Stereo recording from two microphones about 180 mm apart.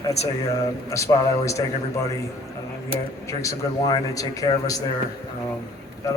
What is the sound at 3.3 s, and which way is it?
A man's voice, 15° left (ahead or behind).